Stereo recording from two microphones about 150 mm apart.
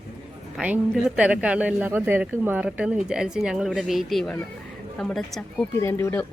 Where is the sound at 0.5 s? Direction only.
5° right (ahead or behind).